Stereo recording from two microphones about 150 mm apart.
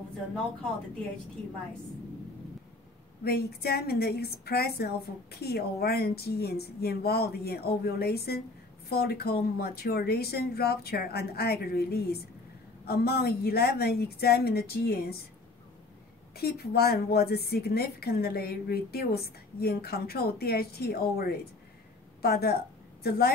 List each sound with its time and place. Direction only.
3.3 s a woman's voice: 90° left
16.3 s a woman's voice: 90° left